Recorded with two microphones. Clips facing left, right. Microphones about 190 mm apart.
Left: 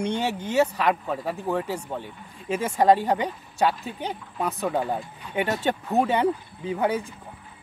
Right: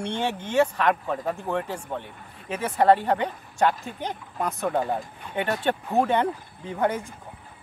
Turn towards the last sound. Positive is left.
turn(degrees=5)  # may be behind; listen again after turning